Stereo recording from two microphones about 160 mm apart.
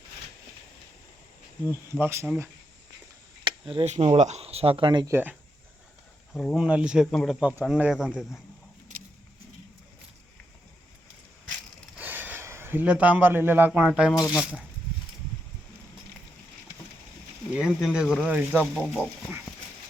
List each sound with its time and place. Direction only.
1.7 s speech: 15° right (ahead or behind)
3.4 s a sound: 30° right (ahead or behind)
3.8 s speech: 45° right (ahead or behind); by 5.1 s 30° right (ahead or behind)
5.1 s speech: 10° right (ahead or behind)
6.3 s speech: 5° left (ahead or behind)
11.9 s speech: 10° right (ahead or behind)
17.5 s speech: 5° right (ahead or behind)